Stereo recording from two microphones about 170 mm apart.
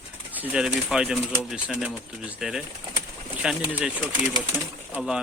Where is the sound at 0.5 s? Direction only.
5° right (ahead or behind).